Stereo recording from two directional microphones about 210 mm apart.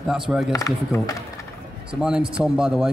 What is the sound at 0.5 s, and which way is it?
Speech, 15° left (ahead or behind).